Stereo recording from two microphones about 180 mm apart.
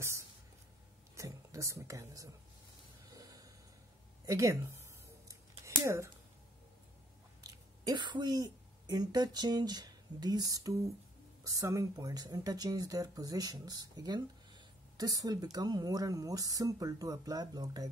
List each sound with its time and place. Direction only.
1.1 s speech: 20° right (ahead or behind)
3.1 s snort: 20° right (ahead or behind)
4.3 s a woman's voice: 15° right (ahead or behind)
7.4 s speech: 20° right (ahead or behind)